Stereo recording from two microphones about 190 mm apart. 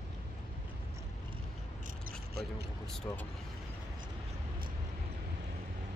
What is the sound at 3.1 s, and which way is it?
Speech, 20° left (ahead or behind).